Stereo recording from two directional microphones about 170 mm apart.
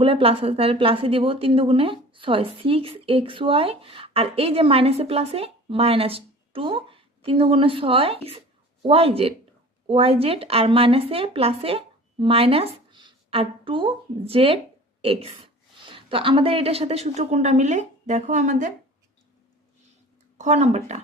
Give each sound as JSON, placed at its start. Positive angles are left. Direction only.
{"t": 0.0, "sound": "a woman's voice", "side_deg": -35}
{"t": 20.4, "sound": "a woman's voice", "side_deg": -40}